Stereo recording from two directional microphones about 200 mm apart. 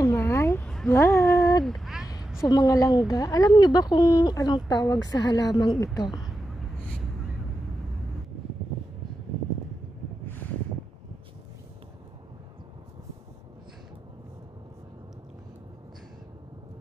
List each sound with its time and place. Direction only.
0.0 s cat: 10° left (ahead or behind)
1.6 s a sound: centre (ahead or behind)
2.4 s speech: 20° left (ahead or behind)